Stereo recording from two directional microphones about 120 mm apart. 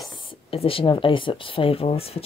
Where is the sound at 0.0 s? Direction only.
50° left (ahead or behind).